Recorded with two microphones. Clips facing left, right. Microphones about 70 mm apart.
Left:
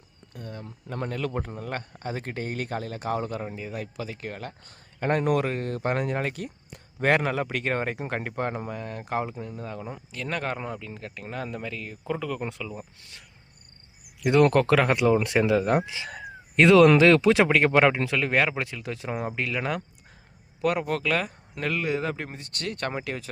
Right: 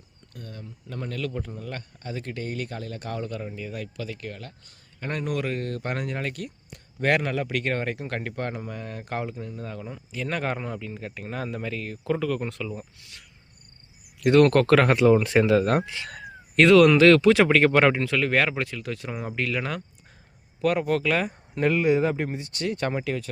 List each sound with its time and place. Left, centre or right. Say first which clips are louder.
0.3 s speech: left 2 dB; centre
1.3 s a man's voice: left 2 dB; left
2.0 s speech: left 1 dB; left
4.3 s speech: left 3 dB; left
5.5 s speech: left 2 dB; centre
8.7 s speech: left 2 dB; centre
10.1 s speech: right 2 dB; centre
14.2 s speech: right 2 dB; centre
19.4 s speech: even; centre
21.6 s speech: right 6 dB; centre
22.9 s speech: right 4 dB; centre